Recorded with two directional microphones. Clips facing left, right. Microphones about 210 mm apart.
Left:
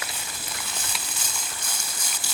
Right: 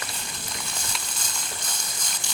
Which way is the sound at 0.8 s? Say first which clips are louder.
Even; 5° left (ahead or behind).